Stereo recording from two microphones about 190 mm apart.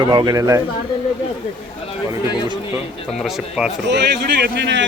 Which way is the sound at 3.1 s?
Centre (ahead or behind).